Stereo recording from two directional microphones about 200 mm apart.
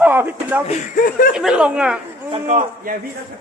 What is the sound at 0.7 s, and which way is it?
Speech, 45° left (ahead or behind).